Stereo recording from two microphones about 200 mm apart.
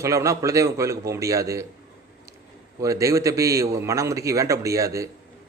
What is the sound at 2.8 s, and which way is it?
A man's voice, 15° right (ahead or behind).